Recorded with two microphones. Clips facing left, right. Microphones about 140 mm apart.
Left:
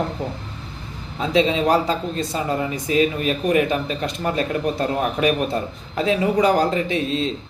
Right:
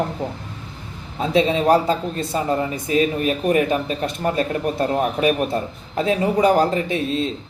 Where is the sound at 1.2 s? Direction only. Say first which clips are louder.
Right 1 dB; 45° right (ahead or behind).